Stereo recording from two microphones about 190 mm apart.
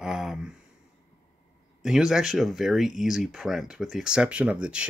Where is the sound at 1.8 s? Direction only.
5° right (ahead or behind).